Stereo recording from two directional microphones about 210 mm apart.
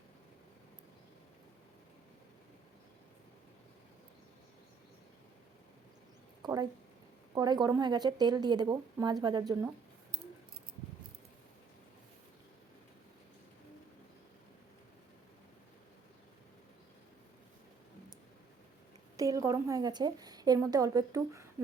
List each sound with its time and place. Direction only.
6.4 s a sound: 20° right (ahead or behind)
7.3 s a woman's voice: 20° right (ahead or behind)
19.1 s a woman's voice: 15° right (ahead or behind)